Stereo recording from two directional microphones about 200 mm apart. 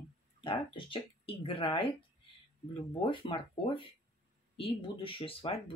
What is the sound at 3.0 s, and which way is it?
Speech, 25° left (ahead or behind).